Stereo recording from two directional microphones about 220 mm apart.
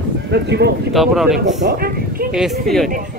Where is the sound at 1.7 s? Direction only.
45° right (ahead or behind).